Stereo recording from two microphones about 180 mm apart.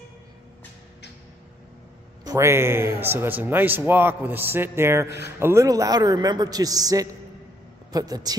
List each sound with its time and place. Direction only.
2.2 s a woman's voice: 15° right (ahead or behind)